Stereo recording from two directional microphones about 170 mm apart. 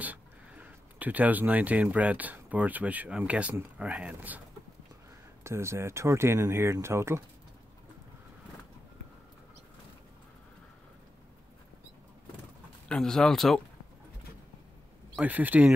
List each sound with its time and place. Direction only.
0.0 s speech: 10° right (ahead or behind)
5.4 s speech: 15° right (ahead or behind)
12.8 s speech: 5° left (ahead or behind)
15.1 s speech: 10° right (ahead or behind)